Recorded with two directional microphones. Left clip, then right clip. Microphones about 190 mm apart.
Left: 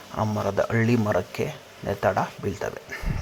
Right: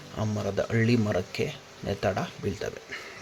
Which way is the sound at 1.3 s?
25° left (ahead or behind).